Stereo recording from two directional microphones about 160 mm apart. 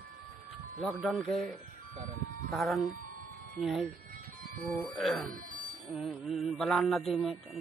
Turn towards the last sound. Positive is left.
turn(degrees=0)  # may be behind; listen again after turning